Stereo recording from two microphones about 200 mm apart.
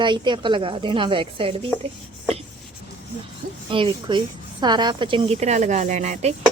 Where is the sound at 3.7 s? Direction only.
25° right (ahead or behind).